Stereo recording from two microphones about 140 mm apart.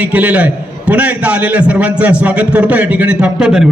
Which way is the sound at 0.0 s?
10° right (ahead or behind).